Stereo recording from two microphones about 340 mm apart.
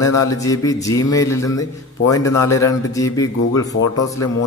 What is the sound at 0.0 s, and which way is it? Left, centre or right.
Speech, centre.